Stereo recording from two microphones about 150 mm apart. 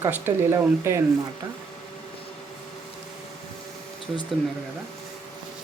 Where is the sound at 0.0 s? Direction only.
15° right (ahead or behind).